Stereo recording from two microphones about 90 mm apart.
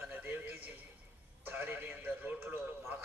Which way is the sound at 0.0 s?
20° right (ahead or behind).